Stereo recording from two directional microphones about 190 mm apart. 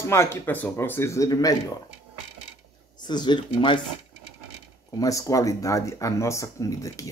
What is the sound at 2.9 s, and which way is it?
Speech, 25° left (ahead or behind).